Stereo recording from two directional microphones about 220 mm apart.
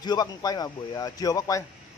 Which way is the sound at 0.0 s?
20° left (ahead or behind).